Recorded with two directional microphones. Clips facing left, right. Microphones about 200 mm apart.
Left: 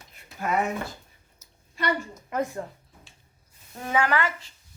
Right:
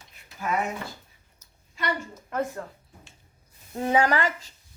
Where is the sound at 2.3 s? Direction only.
10° left (ahead or behind).